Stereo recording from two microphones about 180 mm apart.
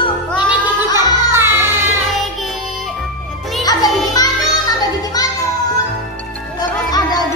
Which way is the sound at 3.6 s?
20° left (ahead or behind).